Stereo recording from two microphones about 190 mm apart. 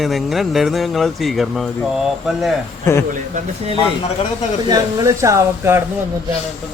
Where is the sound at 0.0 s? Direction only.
Centre (ahead or behind).